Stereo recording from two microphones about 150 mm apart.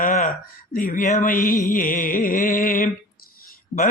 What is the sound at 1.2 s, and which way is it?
Mantra, 65° left (ahead or behind).